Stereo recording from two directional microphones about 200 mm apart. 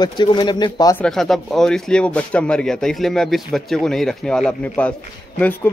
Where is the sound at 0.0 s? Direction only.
20° left (ahead or behind).